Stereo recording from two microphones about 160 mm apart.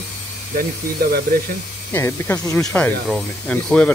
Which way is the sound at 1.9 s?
15° left (ahead or behind).